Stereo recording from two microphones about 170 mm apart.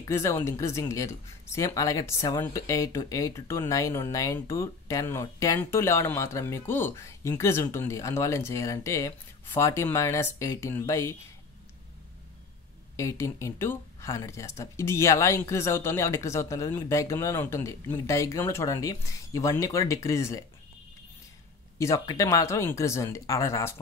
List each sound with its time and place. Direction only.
0.0 s speech: 20° left (ahead or behind)
12.9 s speech: 15° left (ahead or behind)
21.7 s speech: 20° left (ahead or behind)